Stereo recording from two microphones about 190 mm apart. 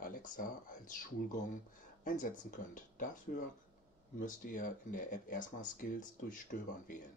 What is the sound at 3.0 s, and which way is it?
Speech, 45° left (ahead or behind).